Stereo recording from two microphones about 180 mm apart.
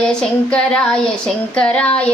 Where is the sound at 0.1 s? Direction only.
5° left (ahead or behind).